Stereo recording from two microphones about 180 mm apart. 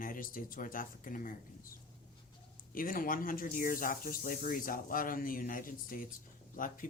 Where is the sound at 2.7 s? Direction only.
50° left (ahead or behind).